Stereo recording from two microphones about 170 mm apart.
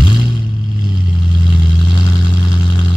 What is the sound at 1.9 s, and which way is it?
Vehicle, 25° left (ahead or behind).